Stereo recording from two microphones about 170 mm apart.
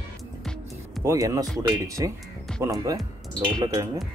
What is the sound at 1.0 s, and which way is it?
Speech, 20° right (ahead or behind).